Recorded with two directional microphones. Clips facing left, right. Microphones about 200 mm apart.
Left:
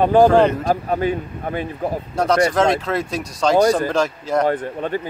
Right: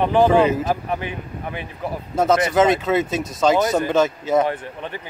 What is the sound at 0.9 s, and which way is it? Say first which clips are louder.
Speech: left 7 dB; 40° left (ahead or behind).